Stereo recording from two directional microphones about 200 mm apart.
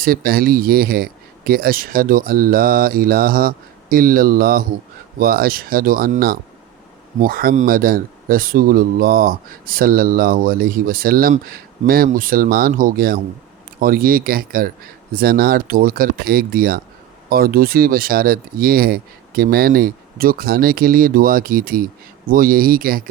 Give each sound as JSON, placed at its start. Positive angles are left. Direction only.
{"t": 0.0, "sound": "speech", "side_deg": -45}